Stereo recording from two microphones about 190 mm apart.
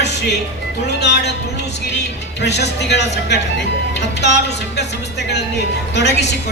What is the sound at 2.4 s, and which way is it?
Speech, 65° left (ahead or behind).